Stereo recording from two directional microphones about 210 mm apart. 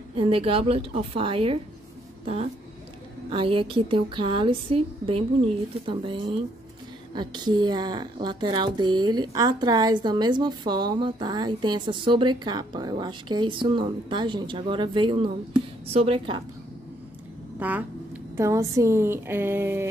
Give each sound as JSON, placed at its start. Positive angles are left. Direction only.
{"t": 0.1, "sound": "speech", "side_deg": -25}
{"t": 3.3, "sound": "speech", "side_deg": -25}
{"t": 17.6, "sound": "speech", "side_deg": -5}